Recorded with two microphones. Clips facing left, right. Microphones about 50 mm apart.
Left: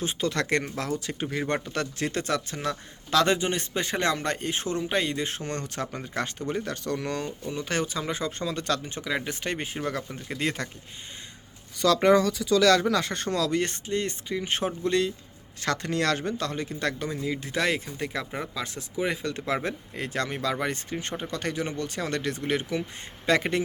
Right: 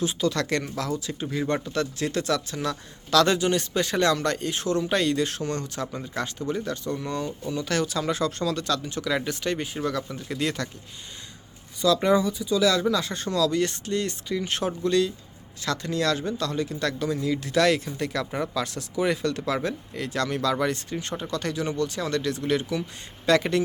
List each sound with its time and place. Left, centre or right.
0.0 s speech: left
4.8 s speech: centre; by 7.3 s left
7.4 s speech: left
8.6 s speech: left
9.0 s speech: left
12.0 s speech: left
12.8 s speech: left
15.6 s speech: left; by 19.5 s centre
19.5 s speech: left